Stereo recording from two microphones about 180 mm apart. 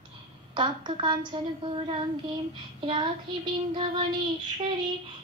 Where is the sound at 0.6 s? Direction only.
25° right (ahead or behind).